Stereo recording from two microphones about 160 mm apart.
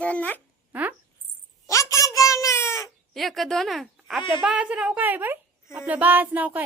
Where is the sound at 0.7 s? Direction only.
10° right (ahead or behind).